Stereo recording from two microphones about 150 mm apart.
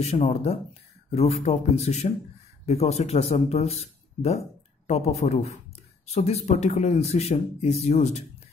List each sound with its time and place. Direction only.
0.0 s speech: 45° left (ahead or behind)